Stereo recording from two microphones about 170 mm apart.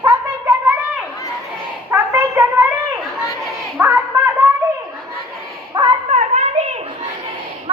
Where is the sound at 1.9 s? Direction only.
15° right (ahead or behind).